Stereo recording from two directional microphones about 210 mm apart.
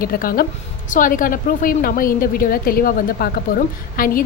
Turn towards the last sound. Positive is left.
turn(degrees=45)  # may be behind; listen again after turning